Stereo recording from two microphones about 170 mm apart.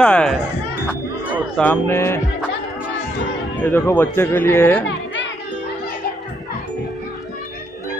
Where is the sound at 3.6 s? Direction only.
15° left (ahead or behind).